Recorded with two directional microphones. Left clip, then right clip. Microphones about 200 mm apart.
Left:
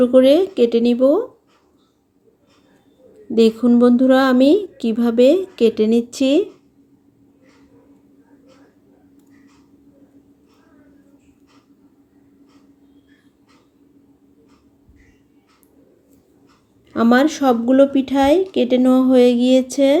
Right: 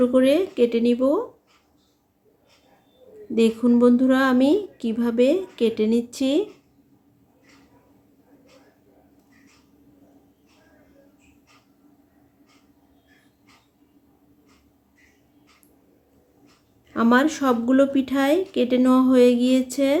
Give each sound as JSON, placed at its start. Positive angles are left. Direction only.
{"t": 0.0, "sound": "a woman's voice", "side_deg": 20}
{"t": 3.3, "sound": "a woman's voice", "side_deg": 20}
{"t": 16.9, "sound": "a woman's voice", "side_deg": 20}